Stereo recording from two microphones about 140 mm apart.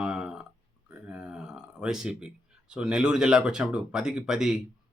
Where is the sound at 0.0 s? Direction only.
5° right (ahead or behind).